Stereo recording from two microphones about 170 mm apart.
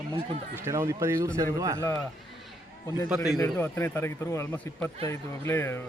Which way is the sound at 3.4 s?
10° left (ahead or behind).